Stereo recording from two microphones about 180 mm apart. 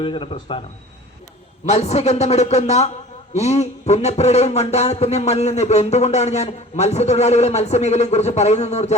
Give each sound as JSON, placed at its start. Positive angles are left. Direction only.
{"t": 0.0, "sound": "a man's voice", "side_deg": 30}
{"t": 1.6, "sound": "a man's voice", "side_deg": 35}